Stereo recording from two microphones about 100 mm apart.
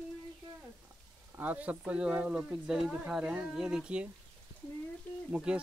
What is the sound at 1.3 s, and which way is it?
Speech, 15° right (ahead or behind).